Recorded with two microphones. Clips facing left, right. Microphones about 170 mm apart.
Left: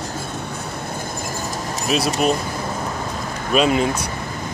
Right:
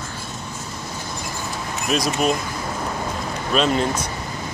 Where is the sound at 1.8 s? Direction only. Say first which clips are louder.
Left 1 dB; 5° left (ahead or behind).